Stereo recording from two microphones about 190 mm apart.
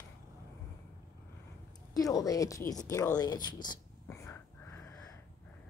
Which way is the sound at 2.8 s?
15° left (ahead or behind).